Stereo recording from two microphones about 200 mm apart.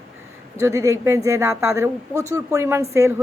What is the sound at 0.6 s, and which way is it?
A woman's voice, 15° right (ahead or behind).